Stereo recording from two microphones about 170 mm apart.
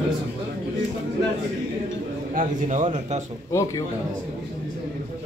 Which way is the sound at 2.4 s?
45° right (ahead or behind).